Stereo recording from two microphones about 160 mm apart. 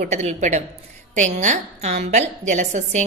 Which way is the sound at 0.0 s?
45° right (ahead or behind).